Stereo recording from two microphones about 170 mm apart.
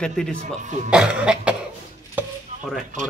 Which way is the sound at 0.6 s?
45° right (ahead or behind).